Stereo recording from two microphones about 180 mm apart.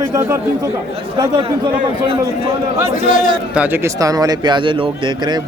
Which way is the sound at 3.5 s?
10° right (ahead or behind).